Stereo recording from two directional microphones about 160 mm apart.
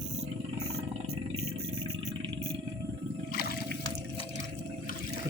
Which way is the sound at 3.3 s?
70° left (ahead or behind).